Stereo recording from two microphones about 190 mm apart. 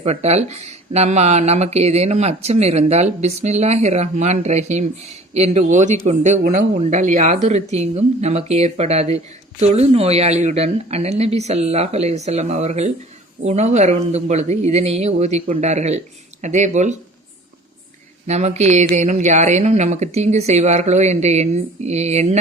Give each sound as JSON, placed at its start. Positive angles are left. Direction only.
{"t": 0.0, "sound": "speech", "side_deg": -35}
{"t": 18.3, "sound": "speech", "side_deg": -35}